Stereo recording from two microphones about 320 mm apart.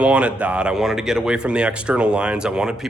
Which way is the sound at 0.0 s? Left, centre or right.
Centre.